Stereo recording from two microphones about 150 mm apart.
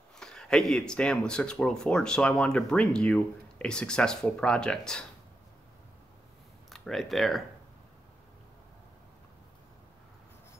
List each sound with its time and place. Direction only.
0.2 s speech: 5° left (ahead or behind)
6.7 s speech: centre (ahead or behind)